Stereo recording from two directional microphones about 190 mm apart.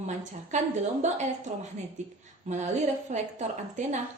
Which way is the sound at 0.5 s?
40° right (ahead or behind).